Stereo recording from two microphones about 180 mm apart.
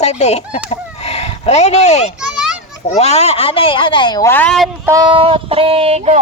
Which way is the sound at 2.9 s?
35° left (ahead or behind).